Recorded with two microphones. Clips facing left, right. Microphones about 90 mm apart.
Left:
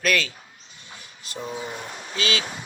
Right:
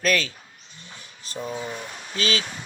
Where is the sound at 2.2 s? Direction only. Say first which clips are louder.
Right 1 dB; 35° right (ahead or behind).